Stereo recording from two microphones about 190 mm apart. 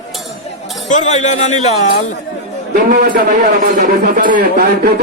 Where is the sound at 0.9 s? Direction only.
40° left (ahead or behind).